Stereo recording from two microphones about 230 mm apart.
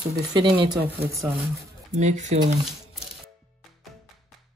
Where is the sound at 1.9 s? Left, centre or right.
Right.